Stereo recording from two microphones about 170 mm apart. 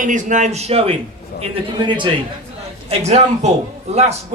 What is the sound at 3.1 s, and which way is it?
A man's voice, 40° right (ahead or behind).